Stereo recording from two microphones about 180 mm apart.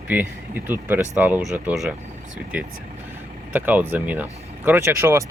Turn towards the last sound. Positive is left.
turn(degrees=-15)  # may be behind; listen again after turning